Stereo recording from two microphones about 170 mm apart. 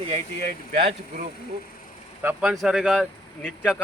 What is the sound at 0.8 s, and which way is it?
Speech, 40° right (ahead or behind).